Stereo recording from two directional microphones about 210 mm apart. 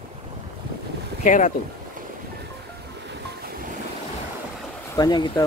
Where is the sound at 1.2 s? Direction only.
35° left (ahead or behind).